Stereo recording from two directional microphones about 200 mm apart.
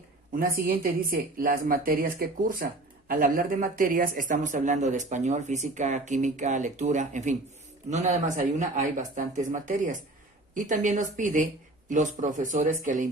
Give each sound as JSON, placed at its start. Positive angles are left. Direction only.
{"t": 0.6, "sound": "a woman's voice", "side_deg": -45}